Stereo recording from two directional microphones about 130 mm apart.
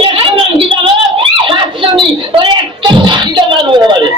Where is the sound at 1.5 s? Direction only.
40° right (ahead or behind).